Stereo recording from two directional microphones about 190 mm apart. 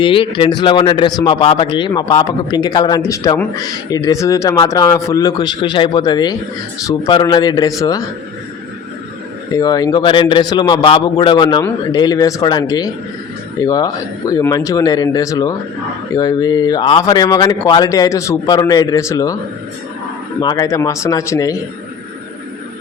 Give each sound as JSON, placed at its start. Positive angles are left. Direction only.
{"t": 0.0, "sound": "speech", "side_deg": 25}
{"t": 9.5, "sound": "speech", "side_deg": 20}
{"t": 20.4, "sound": "speech", "side_deg": 20}